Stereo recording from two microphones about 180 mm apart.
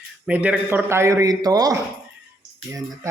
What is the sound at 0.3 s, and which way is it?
Speech, 10° right (ahead or behind).